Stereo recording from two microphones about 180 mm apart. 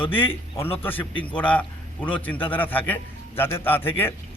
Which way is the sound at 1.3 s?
10° left (ahead or behind).